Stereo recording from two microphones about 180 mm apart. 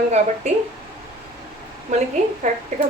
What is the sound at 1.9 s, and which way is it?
Speech, 40° right (ahead or behind).